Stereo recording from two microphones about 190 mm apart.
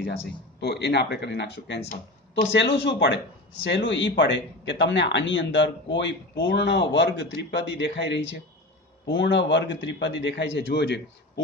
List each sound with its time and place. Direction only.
0.6 s speech: 60° left (ahead or behind)